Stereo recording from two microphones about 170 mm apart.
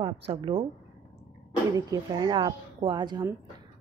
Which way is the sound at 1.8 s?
25° right (ahead or behind).